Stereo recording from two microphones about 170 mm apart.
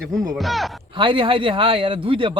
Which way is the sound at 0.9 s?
30° right (ahead or behind).